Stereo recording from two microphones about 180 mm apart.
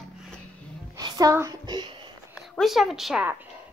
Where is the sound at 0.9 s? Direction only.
20° right (ahead or behind).